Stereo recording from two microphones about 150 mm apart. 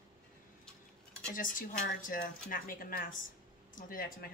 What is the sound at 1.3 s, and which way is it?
Speech, 65° left (ahead or behind).